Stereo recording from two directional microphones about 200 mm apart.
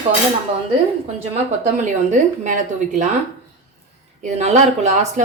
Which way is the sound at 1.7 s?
40° right (ahead or behind).